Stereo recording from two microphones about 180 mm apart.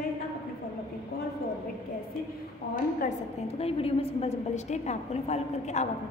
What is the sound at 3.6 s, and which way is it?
A woman's voice, 35° left (ahead or behind).